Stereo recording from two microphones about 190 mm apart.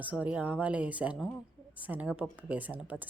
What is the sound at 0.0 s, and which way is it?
Speech, 10° right (ahead or behind).